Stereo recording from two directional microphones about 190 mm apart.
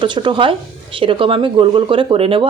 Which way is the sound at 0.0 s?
25° right (ahead or behind).